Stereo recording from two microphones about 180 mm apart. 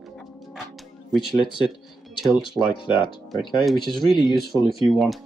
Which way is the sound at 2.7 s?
25° left (ahead or behind).